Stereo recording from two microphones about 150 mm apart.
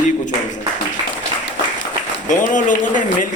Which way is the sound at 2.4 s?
60° left (ahead or behind).